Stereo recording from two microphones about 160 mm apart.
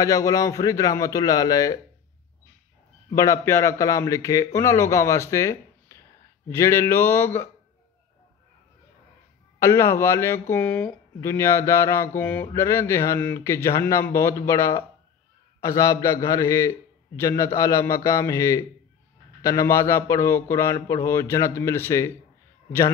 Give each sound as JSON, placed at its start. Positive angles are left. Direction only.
{"t": 0.0, "sound": "a man's voice", "side_deg": 20}
{"t": 3.2, "sound": "a man's voice", "side_deg": 15}
{"t": 9.6, "sound": "a man's voice", "side_deg": 15}